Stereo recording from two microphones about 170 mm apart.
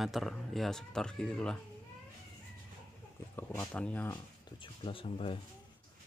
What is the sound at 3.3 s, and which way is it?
Speech, 10° left (ahead or behind).